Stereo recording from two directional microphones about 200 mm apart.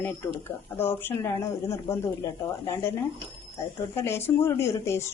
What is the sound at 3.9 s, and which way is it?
Speech, 10° left (ahead or behind).